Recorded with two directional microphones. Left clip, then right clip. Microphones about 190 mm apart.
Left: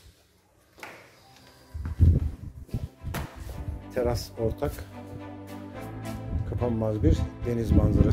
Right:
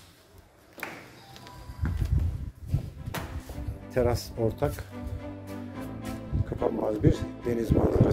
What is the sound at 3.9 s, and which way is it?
Speech, 5° left (ahead or behind).